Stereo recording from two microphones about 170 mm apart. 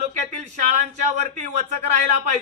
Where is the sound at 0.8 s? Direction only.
45° right (ahead or behind).